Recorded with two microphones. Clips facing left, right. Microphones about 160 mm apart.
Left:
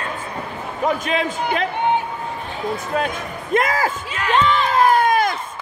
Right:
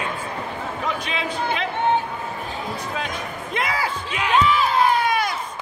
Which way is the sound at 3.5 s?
45° left (ahead or behind).